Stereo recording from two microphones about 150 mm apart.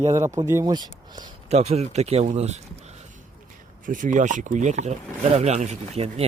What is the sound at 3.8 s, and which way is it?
Speech, 60° right (ahead or behind).